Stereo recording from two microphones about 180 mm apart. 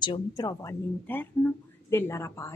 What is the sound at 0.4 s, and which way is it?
Speech, 20° left (ahead or behind).